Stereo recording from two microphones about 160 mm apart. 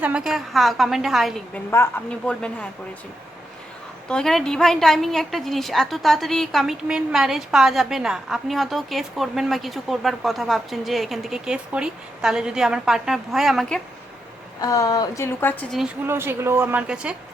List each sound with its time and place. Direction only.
0.0 s a woman's voice: 5° right (ahead or behind)
1.7 s a woman's voice: 10° left (ahead or behind)
4.1 s a woman's voice: 5° left (ahead or behind)
14.6 s a woman's voice: 20° left (ahead or behind)
16.0 s a woman's voice: 15° right (ahead or behind)